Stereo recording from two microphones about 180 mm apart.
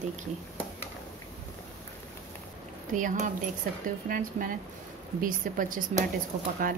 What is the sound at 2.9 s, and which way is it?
A woman's voice, 45° right (ahead or behind).